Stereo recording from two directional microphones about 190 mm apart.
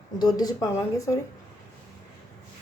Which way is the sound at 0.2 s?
20° left (ahead or behind).